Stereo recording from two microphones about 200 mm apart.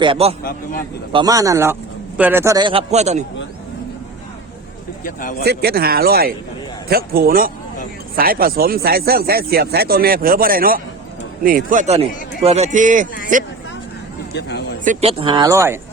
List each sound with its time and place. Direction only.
0.0 s a man's voice: 30° right (ahead or behind)
5.0 s speech: 45° left (ahead or behind)
5.5 s speech: 50° right (ahead or behind)
14.3 s speech: 60° left (ahead or behind)
14.8 s a man's voice: 30° right (ahead or behind); by 15.8 s 15° right (ahead or behind)